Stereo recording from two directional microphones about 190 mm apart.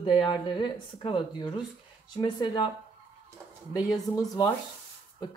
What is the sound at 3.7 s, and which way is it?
Speech, 20° left (ahead or behind).